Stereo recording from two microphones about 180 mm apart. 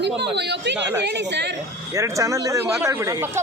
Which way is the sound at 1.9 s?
15° right (ahead or behind).